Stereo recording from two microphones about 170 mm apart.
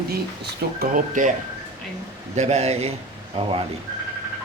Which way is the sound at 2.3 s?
40° right (ahead or behind).